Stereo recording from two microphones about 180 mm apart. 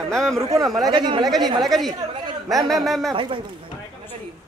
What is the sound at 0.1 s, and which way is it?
Speech, centre (ahead or behind).